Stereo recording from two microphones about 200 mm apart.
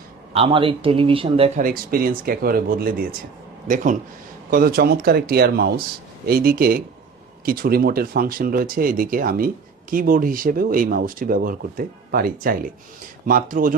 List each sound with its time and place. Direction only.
0.3 s a man's voice: 25° right (ahead or behind)
1.5 s speech: 45° right (ahead or behind)
4.5 s speech: 45° right (ahead or behind)